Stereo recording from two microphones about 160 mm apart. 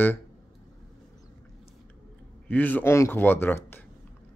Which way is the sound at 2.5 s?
10° left (ahead or behind).